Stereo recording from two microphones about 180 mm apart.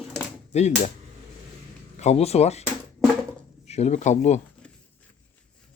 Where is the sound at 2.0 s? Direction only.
35° left (ahead or behind).